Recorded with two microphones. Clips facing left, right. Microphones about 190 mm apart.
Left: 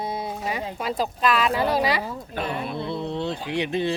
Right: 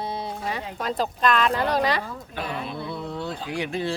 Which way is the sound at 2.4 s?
25° left (ahead or behind).